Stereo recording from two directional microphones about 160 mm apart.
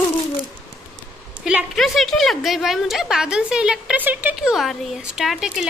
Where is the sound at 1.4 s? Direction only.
5° right (ahead or behind).